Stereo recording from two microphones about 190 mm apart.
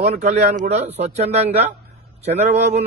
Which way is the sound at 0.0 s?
35° right (ahead or behind).